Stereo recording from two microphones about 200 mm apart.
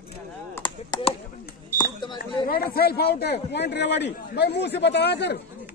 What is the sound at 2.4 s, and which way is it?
Speech, 50° left (ahead or behind).